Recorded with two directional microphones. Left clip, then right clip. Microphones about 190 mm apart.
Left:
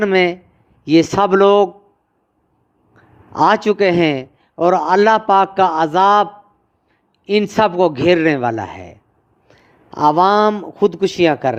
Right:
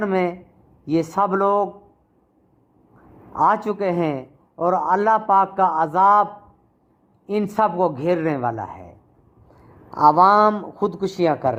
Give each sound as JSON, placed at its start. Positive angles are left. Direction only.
{"t": 0.0, "sound": "a man's voice", "side_deg": 40}
{"t": 3.3, "sound": "a man's voice", "side_deg": 40}
{"t": 7.3, "sound": "a man's voice", "side_deg": 40}